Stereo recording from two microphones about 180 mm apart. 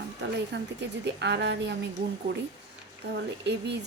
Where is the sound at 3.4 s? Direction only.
70° right (ahead or behind).